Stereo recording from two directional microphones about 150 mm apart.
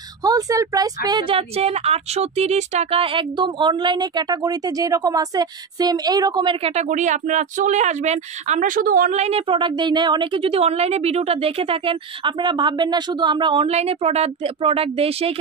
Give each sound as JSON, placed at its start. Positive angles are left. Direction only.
{"t": 0.2, "sound": "speech", "side_deg": -25}
{"t": 1.3, "sound": "speech", "side_deg": -40}
{"t": 6.6, "sound": "speech", "side_deg": -45}
{"t": 9.1, "sound": "a woman's voice", "side_deg": -45}